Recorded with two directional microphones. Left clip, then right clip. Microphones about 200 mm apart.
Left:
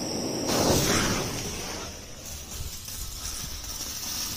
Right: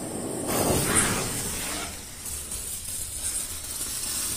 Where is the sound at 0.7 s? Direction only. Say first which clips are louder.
Left 1 dB; 35° left (ahead or behind).